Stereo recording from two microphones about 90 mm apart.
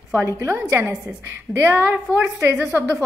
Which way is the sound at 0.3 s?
35° right (ahead or behind).